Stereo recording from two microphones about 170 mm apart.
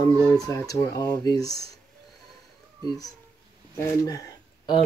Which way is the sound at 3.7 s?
20° left (ahead or behind).